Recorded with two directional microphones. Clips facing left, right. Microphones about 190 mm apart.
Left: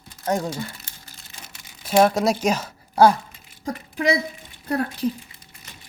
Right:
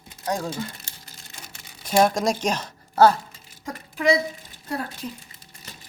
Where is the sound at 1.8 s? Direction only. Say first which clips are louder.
Left 2 dB; 5° left (ahead or behind).